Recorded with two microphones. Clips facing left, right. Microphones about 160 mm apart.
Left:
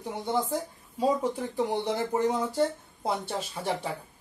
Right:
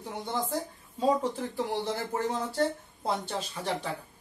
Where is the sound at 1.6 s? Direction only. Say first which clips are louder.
Left 4 dB; 20° left (ahead or behind).